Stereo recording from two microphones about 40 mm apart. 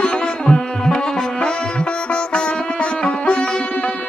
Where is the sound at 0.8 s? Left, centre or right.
Centre.